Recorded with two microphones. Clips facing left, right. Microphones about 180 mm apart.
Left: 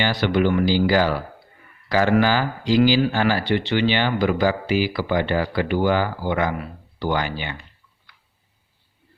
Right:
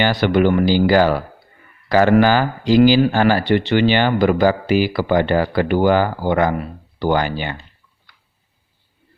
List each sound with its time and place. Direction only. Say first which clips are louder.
0.0 s speech: right 4 dB; 55° right (ahead or behind)